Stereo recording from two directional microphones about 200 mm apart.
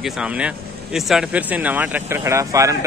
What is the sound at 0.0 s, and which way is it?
Speech, 5° right (ahead or behind).